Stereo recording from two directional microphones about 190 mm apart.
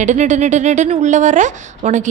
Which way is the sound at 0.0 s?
40° right (ahead or behind).